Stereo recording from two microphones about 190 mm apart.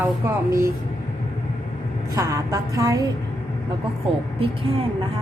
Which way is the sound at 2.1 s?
20° right (ahead or behind).